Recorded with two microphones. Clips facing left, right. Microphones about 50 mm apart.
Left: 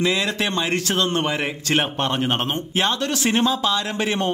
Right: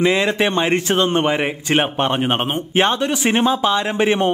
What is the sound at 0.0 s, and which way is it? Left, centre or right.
A man's voice, right.